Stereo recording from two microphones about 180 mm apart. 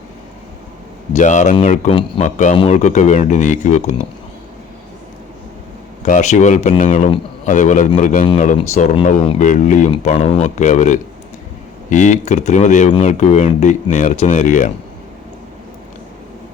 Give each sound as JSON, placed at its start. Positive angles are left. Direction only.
{"t": 1.1, "sound": "speech", "side_deg": 40}
{"t": 1.9, "sound": "speech", "side_deg": 30}
{"t": 2.2, "sound": "speech", "side_deg": 40}
{"t": 6.1, "sound": "speech", "side_deg": 45}
{"t": 9.4, "sound": "speech", "side_deg": 45}